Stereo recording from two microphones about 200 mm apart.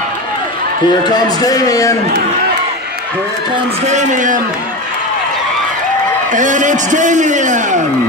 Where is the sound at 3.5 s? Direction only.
30° right (ahead or behind).